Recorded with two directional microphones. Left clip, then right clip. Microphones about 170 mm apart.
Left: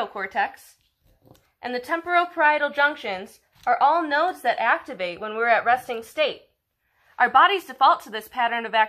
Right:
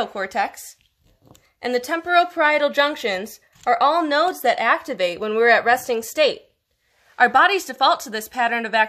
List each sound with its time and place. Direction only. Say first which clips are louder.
0.0 s a woman's voice: right 2 dB; 70° right (ahead or behind)
1.6 s a woman's voice: right 4 dB; 70° right (ahead or behind)